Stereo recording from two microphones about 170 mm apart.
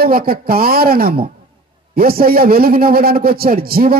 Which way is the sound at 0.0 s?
60° right (ahead or behind).